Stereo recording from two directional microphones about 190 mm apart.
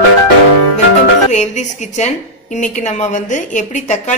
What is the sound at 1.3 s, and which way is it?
A woman's voice, 40° left (ahead or behind).